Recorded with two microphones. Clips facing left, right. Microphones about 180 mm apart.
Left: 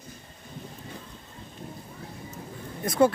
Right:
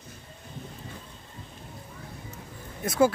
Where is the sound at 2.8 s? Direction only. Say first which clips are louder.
Left 1 dB; 5° right (ahead or behind).